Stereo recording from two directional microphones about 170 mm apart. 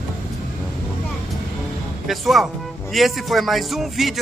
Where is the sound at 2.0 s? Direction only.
Centre (ahead or behind).